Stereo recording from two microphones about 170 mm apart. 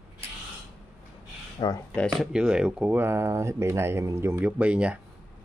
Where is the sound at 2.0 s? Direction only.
Centre (ahead or behind).